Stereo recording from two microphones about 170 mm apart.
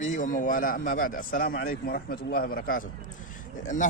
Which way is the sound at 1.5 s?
65° left (ahead or behind).